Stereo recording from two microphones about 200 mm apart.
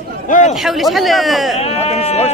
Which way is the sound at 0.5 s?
Centre (ahead or behind).